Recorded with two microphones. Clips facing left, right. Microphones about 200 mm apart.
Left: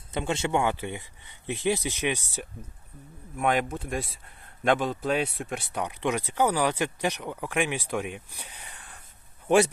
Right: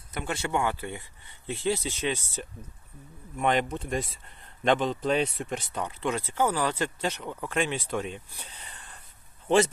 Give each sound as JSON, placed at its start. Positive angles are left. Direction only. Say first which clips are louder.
{"t": 0.1, "sound": "speech", "louder": "left 3 dB", "side_deg": 25}